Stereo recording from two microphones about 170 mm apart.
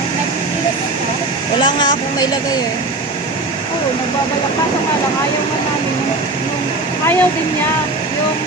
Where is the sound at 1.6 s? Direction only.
25° left (ahead or behind).